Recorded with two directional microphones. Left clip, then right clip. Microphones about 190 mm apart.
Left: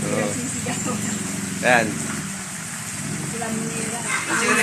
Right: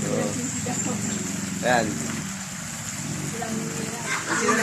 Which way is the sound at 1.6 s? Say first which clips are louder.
Left 4 dB; 25° left (ahead or behind).